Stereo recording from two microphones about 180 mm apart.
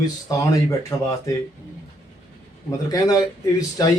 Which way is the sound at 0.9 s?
15° left (ahead or behind).